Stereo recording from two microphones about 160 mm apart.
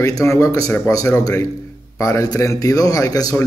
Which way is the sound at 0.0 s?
20° left (ahead or behind).